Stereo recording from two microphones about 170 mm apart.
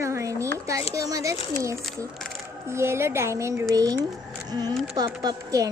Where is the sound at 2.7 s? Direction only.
15° right (ahead or behind).